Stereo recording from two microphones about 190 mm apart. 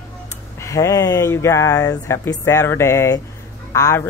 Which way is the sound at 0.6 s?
15° left (ahead or behind).